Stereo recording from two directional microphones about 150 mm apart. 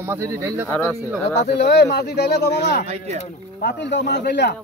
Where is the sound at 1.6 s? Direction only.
90° left.